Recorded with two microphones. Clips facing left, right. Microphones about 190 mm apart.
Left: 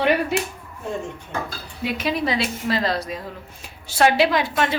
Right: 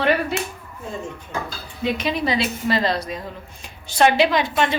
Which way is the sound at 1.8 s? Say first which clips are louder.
Right 1 dB; 5° left (ahead or behind).